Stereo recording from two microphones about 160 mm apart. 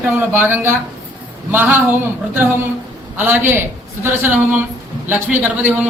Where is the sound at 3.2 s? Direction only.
10° right (ahead or behind).